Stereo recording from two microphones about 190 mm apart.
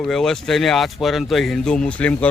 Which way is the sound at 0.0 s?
5° left (ahead or behind).